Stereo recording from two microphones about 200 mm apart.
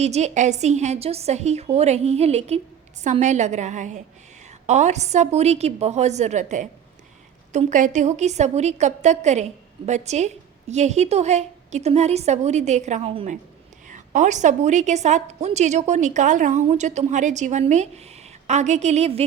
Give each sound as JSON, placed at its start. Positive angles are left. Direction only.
{"t": 0.0, "sound": "a woman's voice", "side_deg": -35}